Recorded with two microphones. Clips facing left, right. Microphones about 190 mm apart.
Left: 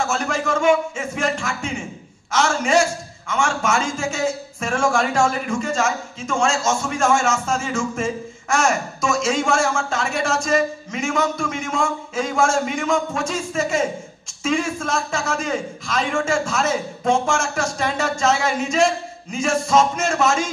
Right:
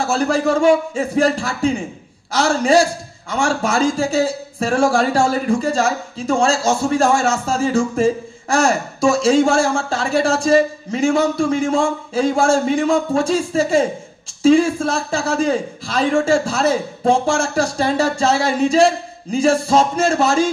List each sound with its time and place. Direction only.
0.0 s a man's voice: 35° right (ahead or behind)